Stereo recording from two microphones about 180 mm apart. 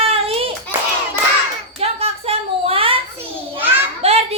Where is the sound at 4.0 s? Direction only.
35° right (ahead or behind).